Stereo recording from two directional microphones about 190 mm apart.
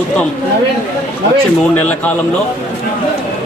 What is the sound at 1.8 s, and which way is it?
Speech, 10° left (ahead or behind).